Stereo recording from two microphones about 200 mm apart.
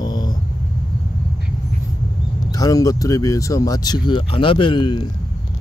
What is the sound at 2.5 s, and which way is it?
Speech, 15° left (ahead or behind).